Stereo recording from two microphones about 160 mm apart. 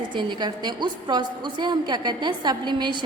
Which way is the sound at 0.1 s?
30° right (ahead or behind).